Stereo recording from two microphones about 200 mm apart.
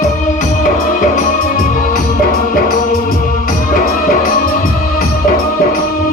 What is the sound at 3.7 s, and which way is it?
Music, 45° left (ahead or behind).